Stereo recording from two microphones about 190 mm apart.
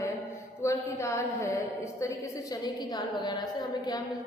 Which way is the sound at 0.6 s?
15° left (ahead or behind).